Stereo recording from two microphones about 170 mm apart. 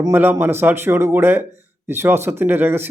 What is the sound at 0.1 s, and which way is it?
Speech, 10° right (ahead or behind).